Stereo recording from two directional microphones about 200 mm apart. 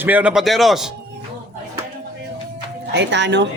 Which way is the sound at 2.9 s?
60° right (ahead or behind).